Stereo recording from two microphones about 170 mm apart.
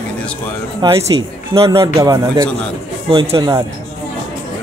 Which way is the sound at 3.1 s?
30° right (ahead or behind).